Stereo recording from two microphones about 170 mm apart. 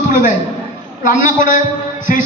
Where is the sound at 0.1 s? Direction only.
50° left (ahead or behind).